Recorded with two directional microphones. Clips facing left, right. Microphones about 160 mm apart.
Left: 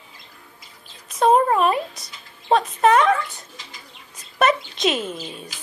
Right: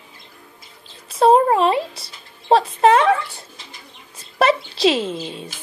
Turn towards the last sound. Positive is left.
turn(degrees=-25)  # may be behind; listen again after turning